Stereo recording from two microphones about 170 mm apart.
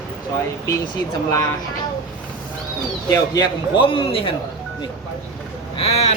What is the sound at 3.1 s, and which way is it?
A man's voice, 20° left (ahead or behind).